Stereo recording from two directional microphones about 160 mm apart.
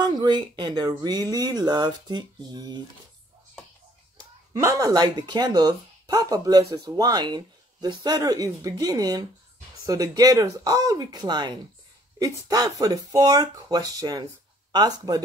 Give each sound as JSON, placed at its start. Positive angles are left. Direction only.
{"t": 0.0, "sound": "speech", "side_deg": -25}
{"t": 4.2, "sound": "speech", "side_deg": -20}